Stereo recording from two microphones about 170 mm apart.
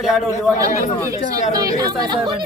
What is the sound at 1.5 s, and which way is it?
Speech, 20° right (ahead or behind).